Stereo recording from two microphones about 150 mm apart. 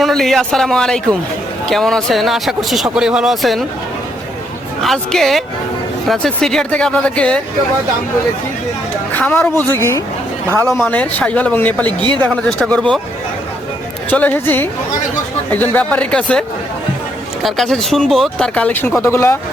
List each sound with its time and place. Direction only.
0.0 s speech: centre (ahead or behind)
4.8 s speech: centre (ahead or behind)
9.1 s speech: 10° left (ahead or behind)
14.1 s speech: 10° left (ahead or behind)
17.4 s speech: centre (ahead or behind)